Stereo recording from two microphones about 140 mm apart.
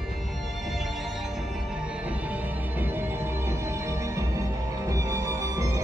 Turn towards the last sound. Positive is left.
turn(degrees=-25)  # may be behind; listen again after turning